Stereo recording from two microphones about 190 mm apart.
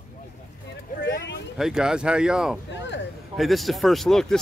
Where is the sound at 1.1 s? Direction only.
65° left (ahead or behind).